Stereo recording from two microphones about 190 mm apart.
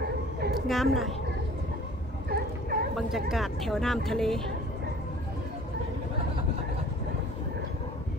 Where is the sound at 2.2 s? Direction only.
55° right (ahead or behind).